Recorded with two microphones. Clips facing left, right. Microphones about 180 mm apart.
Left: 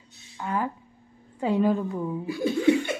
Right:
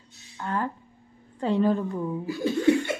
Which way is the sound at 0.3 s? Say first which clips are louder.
Left 1 dB; 10° left (ahead or behind).